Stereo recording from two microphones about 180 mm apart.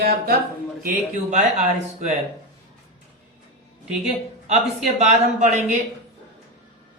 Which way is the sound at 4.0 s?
40° right (ahead or behind).